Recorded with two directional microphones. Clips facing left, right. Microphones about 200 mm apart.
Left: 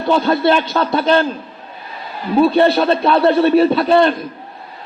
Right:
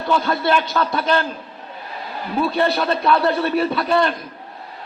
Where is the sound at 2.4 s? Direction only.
30° left (ahead or behind).